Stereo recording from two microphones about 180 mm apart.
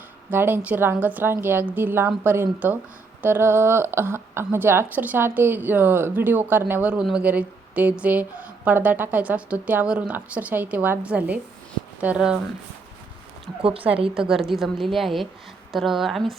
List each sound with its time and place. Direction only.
0.3 s a woman's voice: 10° right (ahead or behind)
13.6 s a woman's voice: 30° right (ahead or behind)
14.2 s a woman's voice: centre (ahead or behind)